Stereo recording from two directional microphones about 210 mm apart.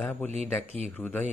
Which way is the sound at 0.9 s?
5° left (ahead or behind).